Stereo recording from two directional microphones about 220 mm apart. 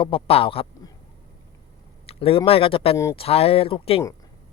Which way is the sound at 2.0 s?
25° left (ahead or behind).